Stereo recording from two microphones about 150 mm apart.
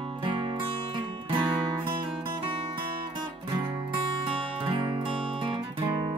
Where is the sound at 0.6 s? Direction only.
35° right (ahead or behind).